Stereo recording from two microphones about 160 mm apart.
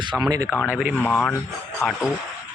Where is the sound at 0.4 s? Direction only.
10° left (ahead or behind).